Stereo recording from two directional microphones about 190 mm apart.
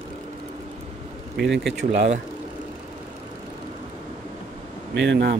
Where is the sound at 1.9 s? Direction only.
35° right (ahead or behind).